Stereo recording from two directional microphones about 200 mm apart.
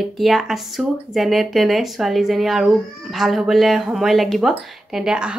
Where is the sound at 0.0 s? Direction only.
Centre (ahead or behind).